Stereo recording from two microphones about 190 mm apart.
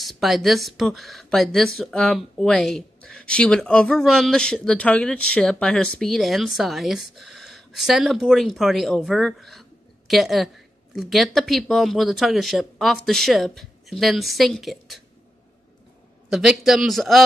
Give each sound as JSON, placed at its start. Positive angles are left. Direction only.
{"t": 0.0, "sound": "speech", "side_deg": 0}
{"t": 16.3, "sound": "speech", "side_deg": 0}